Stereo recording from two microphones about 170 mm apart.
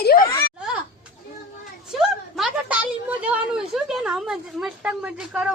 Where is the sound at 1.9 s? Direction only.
Centre (ahead or behind).